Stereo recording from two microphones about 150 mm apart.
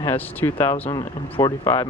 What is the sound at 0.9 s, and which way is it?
Speech, 30° left (ahead or behind).